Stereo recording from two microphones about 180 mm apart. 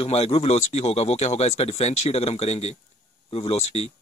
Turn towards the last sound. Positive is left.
turn(degrees=35)  # may be behind; listen again after turning